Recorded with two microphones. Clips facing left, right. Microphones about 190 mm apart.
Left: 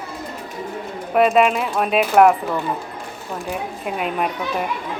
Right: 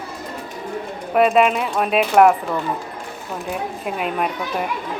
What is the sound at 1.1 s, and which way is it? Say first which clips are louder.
Speech: even; centre (ahead or behind).